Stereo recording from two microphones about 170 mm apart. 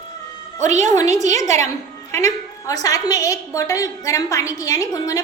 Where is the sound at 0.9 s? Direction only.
20° left (ahead or behind).